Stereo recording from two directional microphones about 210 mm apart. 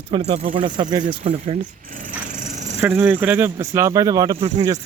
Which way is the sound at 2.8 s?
10° right (ahead or behind).